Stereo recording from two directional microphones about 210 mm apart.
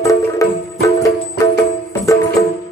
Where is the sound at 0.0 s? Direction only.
15° left (ahead or behind).